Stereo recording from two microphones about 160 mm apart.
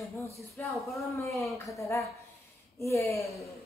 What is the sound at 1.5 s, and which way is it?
Speech, centre (ahead or behind).